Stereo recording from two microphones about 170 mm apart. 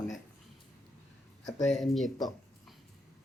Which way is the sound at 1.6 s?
Centre (ahead or behind).